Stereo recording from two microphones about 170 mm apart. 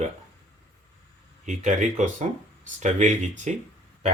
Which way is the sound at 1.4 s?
45° right (ahead or behind).